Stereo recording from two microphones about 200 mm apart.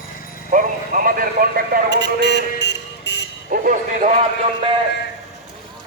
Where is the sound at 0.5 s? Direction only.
45° right (ahead or behind).